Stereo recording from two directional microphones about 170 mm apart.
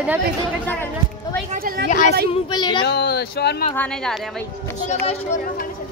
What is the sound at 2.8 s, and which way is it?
Speech, 70° left (ahead or behind).